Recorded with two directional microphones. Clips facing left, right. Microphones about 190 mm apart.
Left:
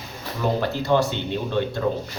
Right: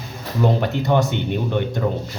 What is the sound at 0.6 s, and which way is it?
Speech, 20° right (ahead or behind).